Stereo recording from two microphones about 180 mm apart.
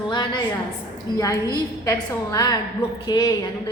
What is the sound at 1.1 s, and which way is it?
A woman's voice, 25° left (ahead or behind).